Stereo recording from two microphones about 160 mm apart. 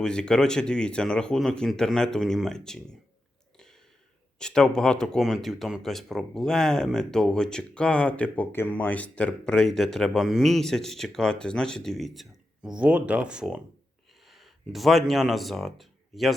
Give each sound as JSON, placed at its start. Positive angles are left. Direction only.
{"t": 0.0, "sound": "speech", "side_deg": 5}
{"t": 4.4, "sound": "speech", "side_deg": 5}